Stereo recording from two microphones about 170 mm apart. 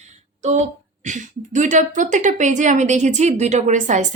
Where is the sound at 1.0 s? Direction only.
45° right (ahead or behind).